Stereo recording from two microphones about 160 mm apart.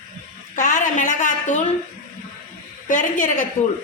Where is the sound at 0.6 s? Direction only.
55° left (ahead or behind).